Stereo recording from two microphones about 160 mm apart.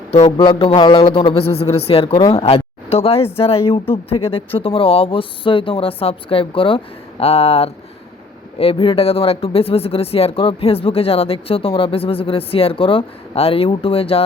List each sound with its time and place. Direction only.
0.3 s speech: 35° left (ahead or behind)
2.1 s speech: 25° left (ahead or behind)
2.4 s speech: 40° left (ahead or behind)